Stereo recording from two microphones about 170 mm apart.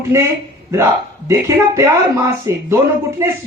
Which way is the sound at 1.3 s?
15° right (ahead or behind).